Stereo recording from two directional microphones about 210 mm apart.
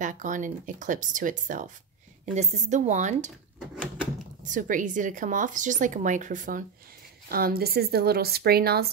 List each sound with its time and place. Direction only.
0.0 s speech: 35° right (ahead or behind)
3.5 s drawer open or close: centre (ahead or behind)
4.4 s a woman's voice: 40° right (ahead or behind)